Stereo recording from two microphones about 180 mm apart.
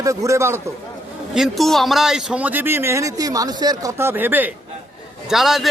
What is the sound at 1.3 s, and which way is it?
A man's voice, centre (ahead or behind).